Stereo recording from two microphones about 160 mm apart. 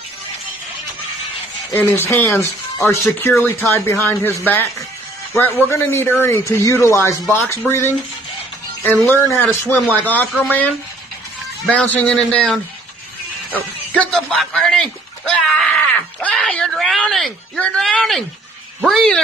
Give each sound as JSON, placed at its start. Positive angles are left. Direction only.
{"t": 1.7, "sound": "a man's voice", "side_deg": 15}
{"t": 9.1, "sound": "speech", "side_deg": 10}